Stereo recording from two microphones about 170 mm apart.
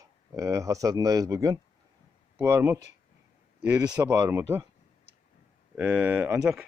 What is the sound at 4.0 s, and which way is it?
Speech, 20° right (ahead or behind).